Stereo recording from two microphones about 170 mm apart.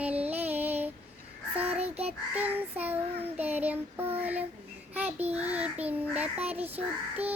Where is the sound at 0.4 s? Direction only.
10° right (ahead or behind).